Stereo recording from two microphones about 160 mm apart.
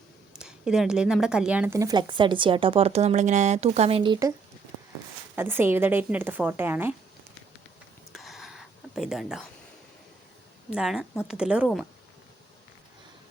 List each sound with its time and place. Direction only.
0.3 s speech: 5° right (ahead or behind); by 4.2 s 35° right (ahead or behind)
5.4 s a woman's voice: 15° right (ahead or behind)
8.1 s a sound: centre (ahead or behind)
10.7 s a woman's voice: 5° right (ahead or behind)